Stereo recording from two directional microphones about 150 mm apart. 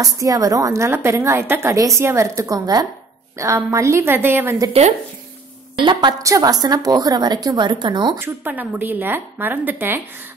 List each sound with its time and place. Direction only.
0.0 s a woman's voice: 20° right (ahead or behind)
5.8 s a woman's voice: 30° right (ahead or behind)
8.2 s a woman's voice: 15° right (ahead or behind)